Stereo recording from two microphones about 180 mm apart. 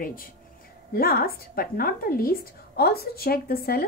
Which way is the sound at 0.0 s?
50° left (ahead or behind).